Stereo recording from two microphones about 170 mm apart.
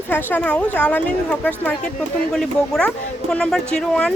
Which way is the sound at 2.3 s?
5° left (ahead or behind).